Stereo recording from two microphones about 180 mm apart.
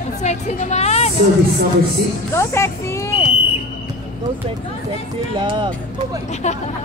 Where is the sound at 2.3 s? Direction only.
15° left (ahead or behind).